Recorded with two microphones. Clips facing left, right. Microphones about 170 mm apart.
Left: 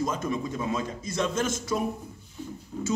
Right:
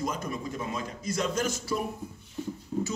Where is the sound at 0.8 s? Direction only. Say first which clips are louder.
Left 2 dB; 25° left (ahead or behind).